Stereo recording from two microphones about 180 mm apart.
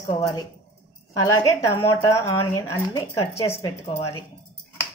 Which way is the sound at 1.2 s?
20° left (ahead or behind).